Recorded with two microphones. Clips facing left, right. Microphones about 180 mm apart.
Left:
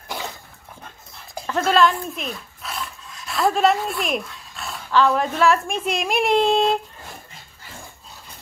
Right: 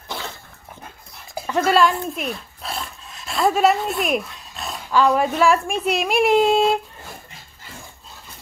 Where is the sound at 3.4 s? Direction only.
5° right (ahead or behind).